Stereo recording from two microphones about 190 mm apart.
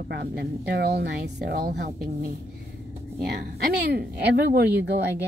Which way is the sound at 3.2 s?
55° right (ahead or behind).